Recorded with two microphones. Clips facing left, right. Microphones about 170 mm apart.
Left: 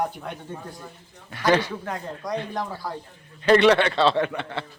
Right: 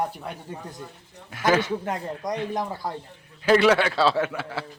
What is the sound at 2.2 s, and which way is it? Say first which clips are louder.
Speech: left 1 dB; 20° right (ahead or behind).